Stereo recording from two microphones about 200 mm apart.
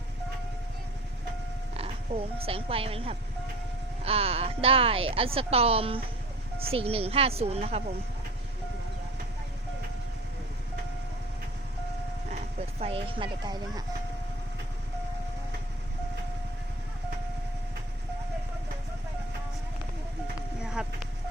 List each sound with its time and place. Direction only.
1.7 s speech: 30° right (ahead or behind)
12.8 s speech: 25° right (ahead or behind)
20.7 s vehicle: 5° right (ahead or behind)